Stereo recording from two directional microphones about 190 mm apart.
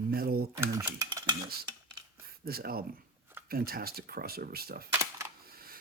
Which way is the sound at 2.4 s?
55° right (ahead or behind).